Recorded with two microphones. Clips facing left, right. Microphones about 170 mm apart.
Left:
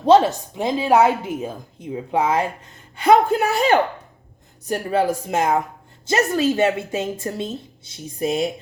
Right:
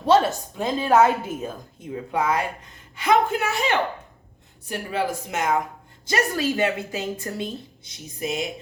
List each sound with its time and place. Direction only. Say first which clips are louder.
0.0 s a woman's voice: left 4 dB; 20° left (ahead or behind)